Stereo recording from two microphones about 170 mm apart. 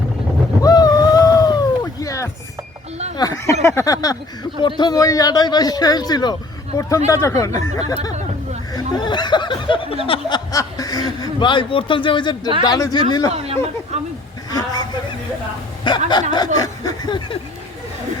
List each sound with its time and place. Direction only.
0.6 s a sound: 25° left (ahead or behind)
4.6 s speech: 25° left (ahead or behind)
13.3 s speech: 35° right (ahead or behind)
14.5 s speech: 25° left (ahead or behind)